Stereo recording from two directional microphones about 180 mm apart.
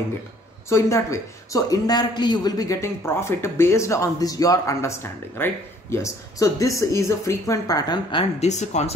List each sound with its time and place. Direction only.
0.7 s speech: 15° left (ahead or behind); by 8.9 s 40° left (ahead or behind)